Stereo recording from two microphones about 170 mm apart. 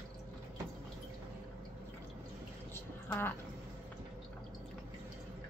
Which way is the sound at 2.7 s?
10° left (ahead or behind).